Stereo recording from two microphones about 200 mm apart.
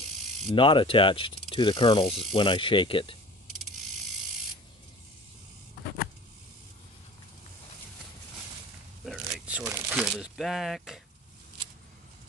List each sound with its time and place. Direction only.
0.5 s speech: 25° left (ahead or behind)
9.0 s a sound: centre (ahead or behind)
9.7 s crumpling: 5° right (ahead or behind)